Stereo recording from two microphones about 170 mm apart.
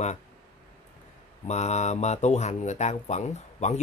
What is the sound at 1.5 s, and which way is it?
Speech, 40° left (ahead or behind).